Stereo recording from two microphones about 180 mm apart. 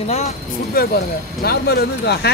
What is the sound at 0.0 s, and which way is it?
Speech, 35° left (ahead or behind).